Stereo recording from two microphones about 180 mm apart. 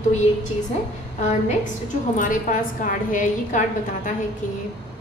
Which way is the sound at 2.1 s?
45° left (ahead or behind).